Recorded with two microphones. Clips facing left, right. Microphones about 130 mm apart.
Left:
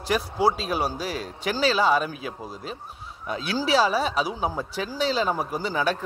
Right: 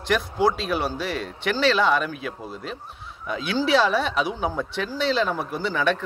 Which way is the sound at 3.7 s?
35° left (ahead or behind).